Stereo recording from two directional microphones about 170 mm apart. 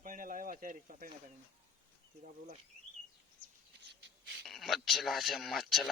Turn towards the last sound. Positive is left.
turn(degrees=0)  # may be behind; listen again after turning